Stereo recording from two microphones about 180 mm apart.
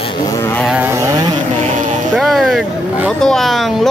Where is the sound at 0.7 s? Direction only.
10° right (ahead or behind).